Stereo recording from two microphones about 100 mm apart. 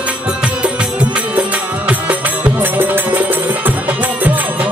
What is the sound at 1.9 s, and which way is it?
Music, 15° right (ahead or behind).